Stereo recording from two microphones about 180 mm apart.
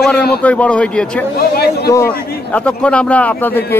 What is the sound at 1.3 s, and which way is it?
Speech, 60° left (ahead or behind).